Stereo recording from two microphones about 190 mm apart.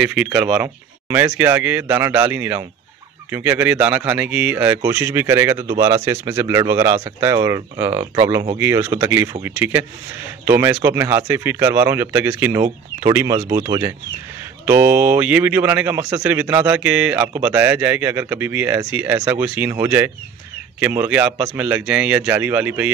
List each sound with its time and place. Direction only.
0.0 s speech: 5° right (ahead or behind)